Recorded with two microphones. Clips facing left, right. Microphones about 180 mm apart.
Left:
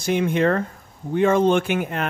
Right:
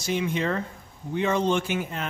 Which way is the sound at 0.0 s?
55° left (ahead or behind).